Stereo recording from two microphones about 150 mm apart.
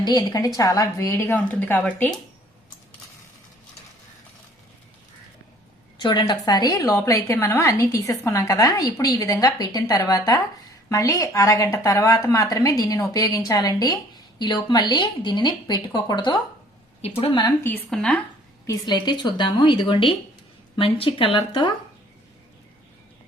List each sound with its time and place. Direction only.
0.0 s speech: 25° left (ahead or behind)
6.0 s a woman's voice: 30° left (ahead or behind)
17.6 s speech: 10° left (ahead or behind)
18.6 s a woman's voice: 25° left (ahead or behind)